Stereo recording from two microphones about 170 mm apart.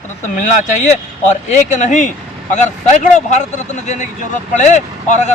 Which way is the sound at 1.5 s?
45° left (ahead or behind).